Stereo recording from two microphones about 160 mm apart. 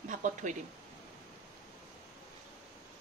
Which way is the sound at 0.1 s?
50° right (ahead or behind).